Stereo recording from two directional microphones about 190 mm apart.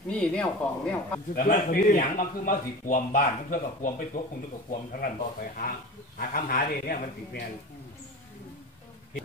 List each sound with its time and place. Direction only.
0.1 s speech: 5° left (ahead or behind)
1.3 s a man's voice: 45° left (ahead or behind)